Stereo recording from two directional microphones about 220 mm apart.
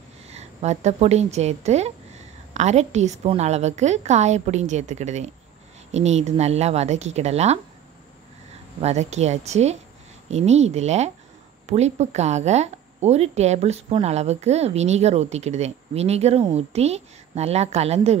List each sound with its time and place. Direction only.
0.3 s a woman's voice: 30° right (ahead or behind)
8.8 s a woman's voice: 30° right (ahead or behind)